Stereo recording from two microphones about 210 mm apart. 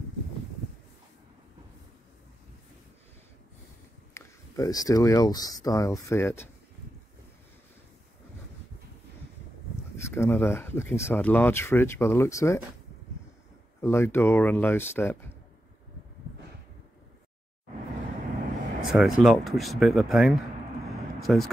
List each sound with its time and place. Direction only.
4.1 s speech: 15° left (ahead or behind)
10.1 s speech: 10° left (ahead or behind)
13.7 s speech: 10° left (ahead or behind)
18.8 s vehicle: centre (ahead or behind)
19.2 s speech: centre (ahead or behind)
21.2 s vehicle: centre (ahead or behind)